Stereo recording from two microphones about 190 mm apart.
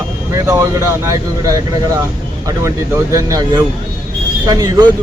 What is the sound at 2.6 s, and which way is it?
A man's voice, 15° right (ahead or behind).